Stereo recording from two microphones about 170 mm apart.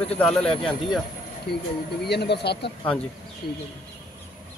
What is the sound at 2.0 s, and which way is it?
Speech, 75° left (ahead or behind).